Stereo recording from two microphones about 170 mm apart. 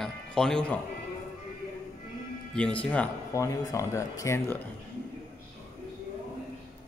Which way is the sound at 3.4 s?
20° left (ahead or behind).